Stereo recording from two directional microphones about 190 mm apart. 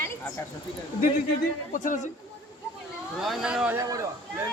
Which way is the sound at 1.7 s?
40° left (ahead or behind).